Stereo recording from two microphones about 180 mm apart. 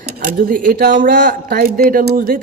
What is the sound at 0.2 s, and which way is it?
A man's voice, 50° right (ahead or behind).